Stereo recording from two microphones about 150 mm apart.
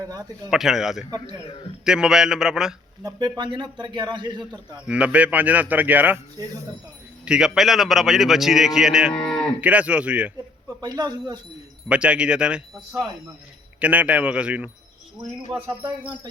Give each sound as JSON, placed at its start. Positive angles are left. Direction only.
{"t": 0.0, "sound": "a man's voice", "side_deg": -25}
{"t": 0.5, "sound": "a man's voice", "side_deg": 0}
{"t": 3.0, "sound": "a man's voice", "side_deg": -25}
{"t": 4.9, "sound": "a man's voice", "side_deg": -10}
{"t": 6.4, "sound": "a man's voice", "side_deg": -20}
{"t": 7.3, "sound": "a man's voice", "side_deg": -5}
{"t": 9.6, "sound": "a man's voice", "side_deg": -10}
{"t": 10.8, "sound": "a man's voice", "side_deg": -25}
{"t": 11.9, "sound": "a man's voice", "side_deg": -5}
{"t": 15.8, "sound": "speech", "side_deg": -30}